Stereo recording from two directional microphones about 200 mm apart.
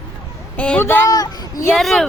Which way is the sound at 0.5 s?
5° left (ahead or behind).